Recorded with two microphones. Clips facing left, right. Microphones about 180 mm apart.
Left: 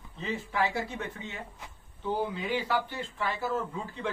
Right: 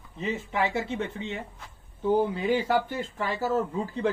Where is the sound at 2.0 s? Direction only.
45° right (ahead or behind).